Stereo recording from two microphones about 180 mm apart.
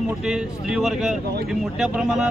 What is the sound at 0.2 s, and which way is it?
A man's voice, 5° right (ahead or behind).